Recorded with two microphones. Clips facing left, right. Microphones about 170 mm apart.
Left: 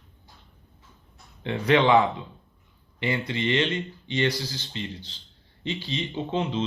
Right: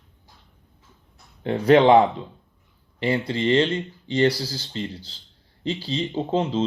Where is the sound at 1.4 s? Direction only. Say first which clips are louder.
Right 6 dB; 45° right (ahead or behind).